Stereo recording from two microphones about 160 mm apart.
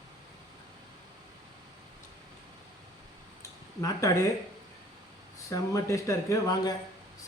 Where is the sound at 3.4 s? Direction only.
20° left (ahead or behind).